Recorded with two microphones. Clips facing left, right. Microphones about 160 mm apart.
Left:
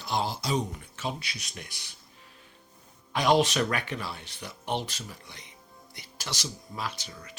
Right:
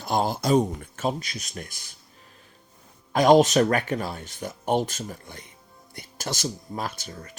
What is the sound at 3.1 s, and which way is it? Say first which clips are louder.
Speech: right 7 dB; 45° right (ahead or behind).